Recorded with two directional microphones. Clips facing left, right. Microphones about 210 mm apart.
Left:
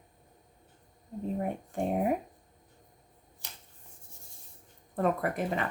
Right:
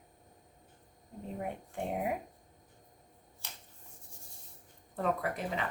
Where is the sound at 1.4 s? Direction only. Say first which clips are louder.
Left 4 dB; 45° left (ahead or behind).